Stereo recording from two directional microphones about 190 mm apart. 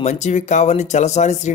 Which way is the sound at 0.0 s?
40° left (ahead or behind).